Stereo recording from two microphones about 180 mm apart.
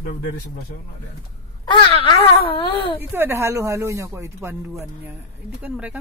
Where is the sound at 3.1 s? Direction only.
15° right (ahead or behind).